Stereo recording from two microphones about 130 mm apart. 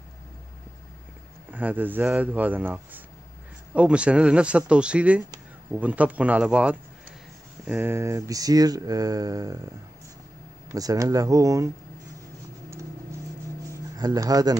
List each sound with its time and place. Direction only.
1.5 s speech: 15° right (ahead or behind)
10.7 s speech: 25° right (ahead or behind)
13.9 s speech: 30° right (ahead or behind)